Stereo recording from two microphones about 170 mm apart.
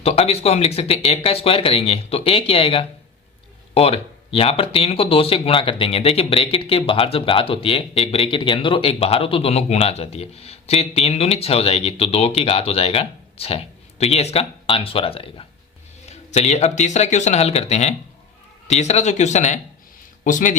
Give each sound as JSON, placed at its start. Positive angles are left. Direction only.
{"t": 0.0, "sound": "speech", "side_deg": 35}